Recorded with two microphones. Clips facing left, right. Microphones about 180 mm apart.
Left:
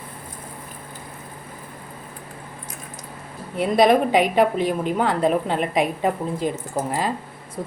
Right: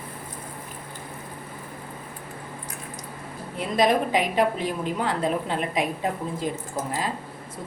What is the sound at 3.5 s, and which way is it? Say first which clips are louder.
A woman's voice: left 5 dB; 60° left (ahead or behind).